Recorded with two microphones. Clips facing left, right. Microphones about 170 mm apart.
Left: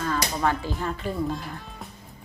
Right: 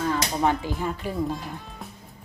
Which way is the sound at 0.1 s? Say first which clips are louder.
Even; 20° right (ahead or behind).